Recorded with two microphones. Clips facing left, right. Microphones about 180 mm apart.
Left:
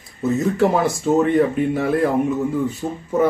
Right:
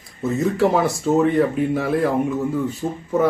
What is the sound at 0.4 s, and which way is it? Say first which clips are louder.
Speech: even; centre (ahead or behind).